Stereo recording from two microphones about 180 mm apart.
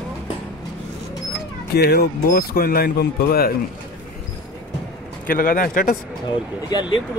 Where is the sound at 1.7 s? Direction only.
65° left (ahead or behind).